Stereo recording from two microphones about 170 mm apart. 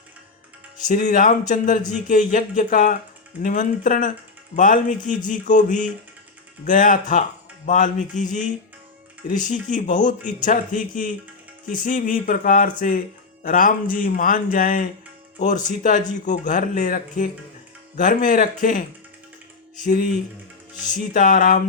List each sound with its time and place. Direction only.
0.9 s speech: 50° left (ahead or behind)
19.8 s music: 55° left (ahead or behind)
20.9 s speech: 50° left (ahead or behind)